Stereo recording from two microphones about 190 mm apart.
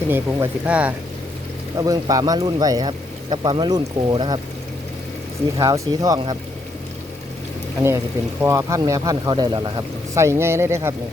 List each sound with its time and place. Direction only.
0.1 s speech: 10° right (ahead or behind)
1.8 s speech: 20° right (ahead or behind)
5.5 s speech: 15° right (ahead or behind)
7.8 s speech: 15° right (ahead or behind)